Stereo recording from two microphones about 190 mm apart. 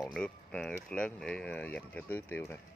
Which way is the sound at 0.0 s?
5° left (ahead or behind).